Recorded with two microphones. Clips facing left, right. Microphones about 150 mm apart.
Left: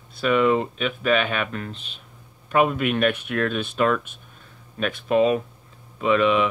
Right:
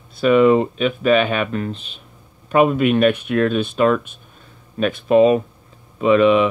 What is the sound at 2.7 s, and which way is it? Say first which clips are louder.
Speech: right 7 dB; 25° right (ahead or behind).